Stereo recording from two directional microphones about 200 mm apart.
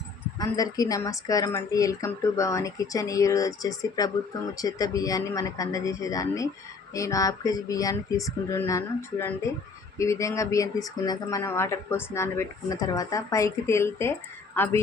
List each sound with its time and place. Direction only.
0.3 s speech: 20° left (ahead or behind)